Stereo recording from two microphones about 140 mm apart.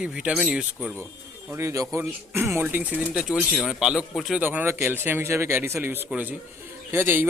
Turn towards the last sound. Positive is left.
turn(degrees=-15)  # may be behind; listen again after turning